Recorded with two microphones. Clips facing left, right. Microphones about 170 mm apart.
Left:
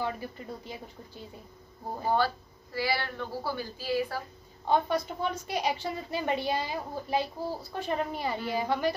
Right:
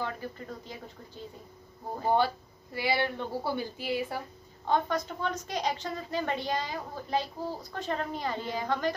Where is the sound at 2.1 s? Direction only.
20° right (ahead or behind).